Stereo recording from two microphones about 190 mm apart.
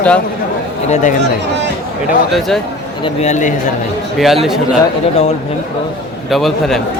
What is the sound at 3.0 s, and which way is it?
Speech, 35° left (ahead or behind).